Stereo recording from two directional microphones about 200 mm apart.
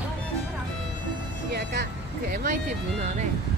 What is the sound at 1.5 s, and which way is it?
Music, 55° right (ahead or behind).